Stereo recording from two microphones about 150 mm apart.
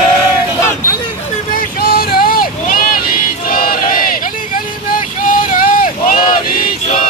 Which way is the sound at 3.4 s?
75° left (ahead or behind).